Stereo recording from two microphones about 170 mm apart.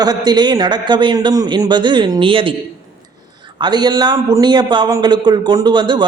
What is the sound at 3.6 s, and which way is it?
A man's voice, 25° right (ahead or behind).